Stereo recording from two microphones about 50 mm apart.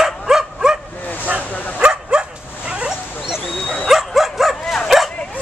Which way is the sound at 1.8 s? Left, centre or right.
Centre.